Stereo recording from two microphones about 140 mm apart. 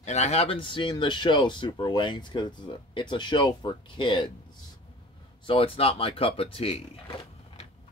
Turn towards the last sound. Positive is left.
turn(degrees=40)  # may be behind; listen again after turning